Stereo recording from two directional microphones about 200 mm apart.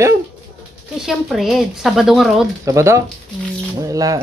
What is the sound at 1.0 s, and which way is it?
Speech, centre (ahead or behind).